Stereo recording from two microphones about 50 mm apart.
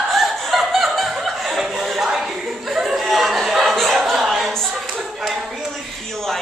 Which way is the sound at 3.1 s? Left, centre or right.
Centre.